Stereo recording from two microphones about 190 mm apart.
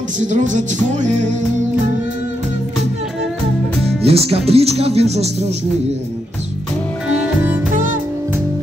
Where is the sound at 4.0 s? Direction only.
30° right (ahead or behind).